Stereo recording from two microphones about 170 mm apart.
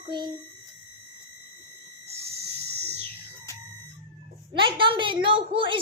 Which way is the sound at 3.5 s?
15° left (ahead or behind).